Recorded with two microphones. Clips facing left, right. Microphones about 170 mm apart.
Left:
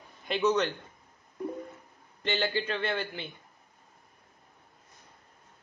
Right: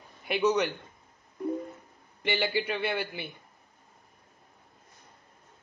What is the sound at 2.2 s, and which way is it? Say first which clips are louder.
A man's voice: right 1 dB; 10° right (ahead or behind).